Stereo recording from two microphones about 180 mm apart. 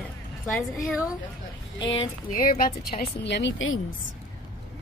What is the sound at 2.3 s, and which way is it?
Speech, 50° left (ahead or behind).